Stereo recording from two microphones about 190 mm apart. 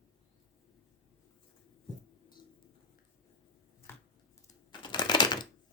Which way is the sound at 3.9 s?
10° left (ahead or behind).